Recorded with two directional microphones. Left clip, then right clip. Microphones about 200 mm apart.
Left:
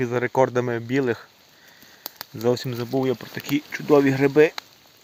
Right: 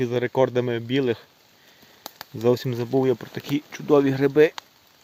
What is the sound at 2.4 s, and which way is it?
Speech, 30° right (ahead or behind).